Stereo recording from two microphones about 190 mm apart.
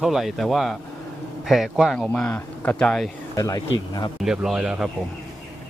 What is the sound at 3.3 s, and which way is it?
Speech, 20° left (ahead or behind).